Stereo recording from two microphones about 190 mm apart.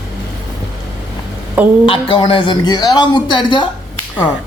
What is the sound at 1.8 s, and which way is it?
A man's voice, 25° left (ahead or behind).